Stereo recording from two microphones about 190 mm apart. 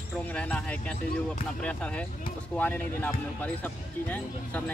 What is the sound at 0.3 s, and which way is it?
Speech, 5° left (ahead or behind).